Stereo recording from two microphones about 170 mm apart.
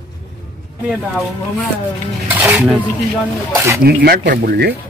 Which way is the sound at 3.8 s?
65° right (ahead or behind).